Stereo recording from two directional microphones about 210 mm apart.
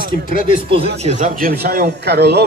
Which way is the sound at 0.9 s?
35° right (ahead or behind).